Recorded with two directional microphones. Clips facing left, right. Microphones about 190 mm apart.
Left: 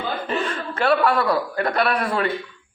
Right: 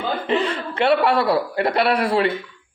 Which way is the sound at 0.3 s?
20° right (ahead or behind).